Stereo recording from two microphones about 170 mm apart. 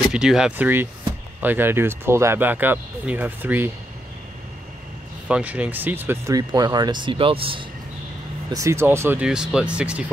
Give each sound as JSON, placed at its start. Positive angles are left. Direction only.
{"t": 0.1, "sound": "speech", "side_deg": -5}
{"t": 5.3, "sound": "speech", "side_deg": -10}
{"t": 8.5, "sound": "speech", "side_deg": -20}